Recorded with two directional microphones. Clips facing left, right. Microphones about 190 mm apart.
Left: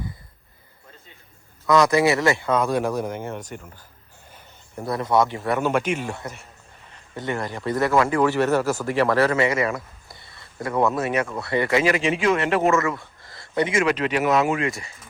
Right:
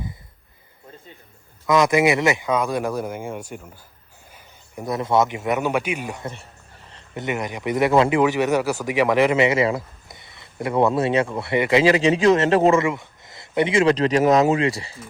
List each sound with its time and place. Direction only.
1.6 s speech: 20° right (ahead or behind)
4.9 s speech: 25° right (ahead or behind)
11.9 s speech: 35° right (ahead or behind)
13.9 s speech: 40° right (ahead or behind)